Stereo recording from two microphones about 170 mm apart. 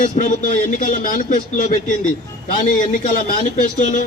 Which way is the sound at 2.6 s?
50° left (ahead or behind).